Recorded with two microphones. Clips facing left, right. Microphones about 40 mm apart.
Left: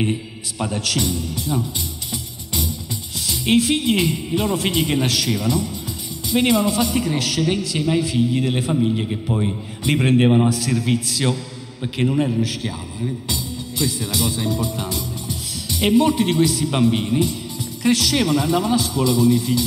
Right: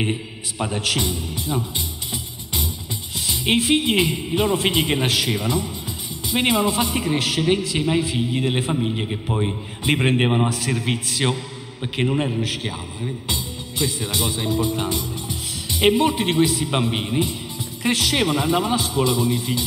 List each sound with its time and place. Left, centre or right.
0.0 s a man's voice: right
3.3 s a man's voice: right
10.5 s a man's voice: right